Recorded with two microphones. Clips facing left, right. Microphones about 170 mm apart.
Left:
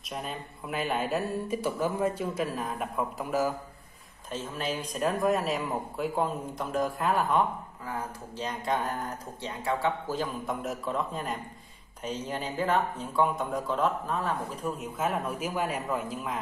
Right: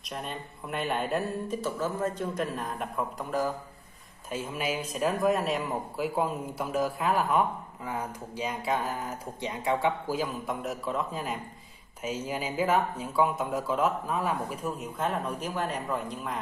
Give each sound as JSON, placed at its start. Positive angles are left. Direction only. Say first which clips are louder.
{"t": 0.1, "sound": "a man's voice", "louder": "even", "side_deg": 0}
{"t": 1.6, "sound": "a man's voice", "louder": "left 3 dB", "side_deg": 10}
{"t": 4.3, "sound": "a man's voice", "louder": "right 1 dB", "side_deg": -10}
{"t": 7.8, "sound": "speech", "louder": "right 2 dB", "side_deg": -20}
{"t": 9.4, "sound": "a man's voice", "louder": "right 2 dB", "side_deg": -15}
{"t": 15.0, "sound": "a man's voice", "louder": "left 1 dB", "side_deg": 5}